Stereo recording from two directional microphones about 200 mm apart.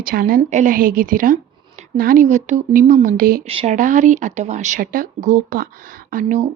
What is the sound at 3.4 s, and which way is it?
A woman's voice, 30° right (ahead or behind).